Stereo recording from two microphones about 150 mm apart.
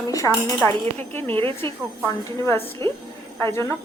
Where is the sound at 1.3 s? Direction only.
35° right (ahead or behind).